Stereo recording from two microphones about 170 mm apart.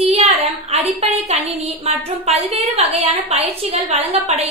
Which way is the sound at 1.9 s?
35° right (ahead or behind).